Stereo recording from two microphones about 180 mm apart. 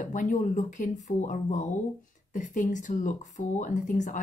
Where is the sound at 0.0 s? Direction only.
45° left (ahead or behind).